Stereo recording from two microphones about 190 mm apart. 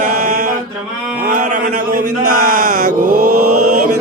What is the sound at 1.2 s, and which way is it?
Speech, 45° right (ahead or behind).